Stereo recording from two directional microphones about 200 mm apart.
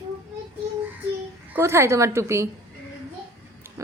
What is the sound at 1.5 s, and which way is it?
Speech, 10° right (ahead or behind).